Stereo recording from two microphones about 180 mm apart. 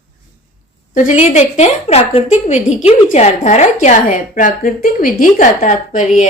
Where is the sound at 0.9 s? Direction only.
45° left (ahead or behind).